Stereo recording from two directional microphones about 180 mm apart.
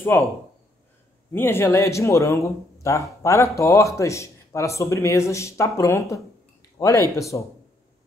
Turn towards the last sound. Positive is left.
turn(degrees=15)  # may be behind; listen again after turning